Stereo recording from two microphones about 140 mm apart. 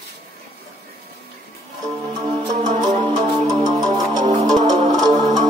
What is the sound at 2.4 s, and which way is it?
Music, 55° right (ahead or behind).